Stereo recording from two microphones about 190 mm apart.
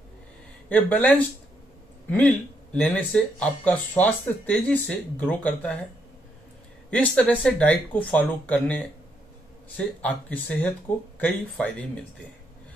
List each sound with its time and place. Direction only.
0.7 s speech: 10° left (ahead or behind)
6.9 s speech: 5° left (ahead or behind)